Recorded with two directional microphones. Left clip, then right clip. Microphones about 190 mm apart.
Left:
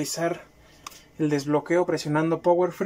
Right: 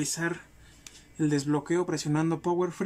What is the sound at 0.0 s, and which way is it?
Speech, 25° right (ahead or behind).